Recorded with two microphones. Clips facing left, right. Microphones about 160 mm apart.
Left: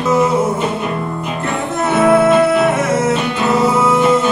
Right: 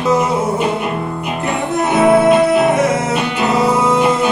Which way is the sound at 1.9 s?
15° right (ahead or behind).